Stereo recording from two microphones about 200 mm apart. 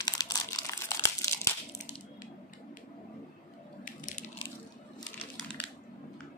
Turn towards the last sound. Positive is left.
turn(degrees=0)  # may be behind; listen again after turning